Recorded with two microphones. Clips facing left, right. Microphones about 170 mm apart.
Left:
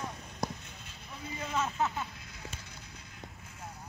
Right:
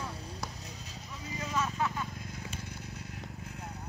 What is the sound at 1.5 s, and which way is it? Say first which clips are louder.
Vehicle: left 1 dB; 25° left (ahead or behind).